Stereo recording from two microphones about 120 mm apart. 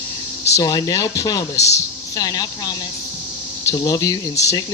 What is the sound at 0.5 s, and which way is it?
Speech, 30° left (ahead or behind).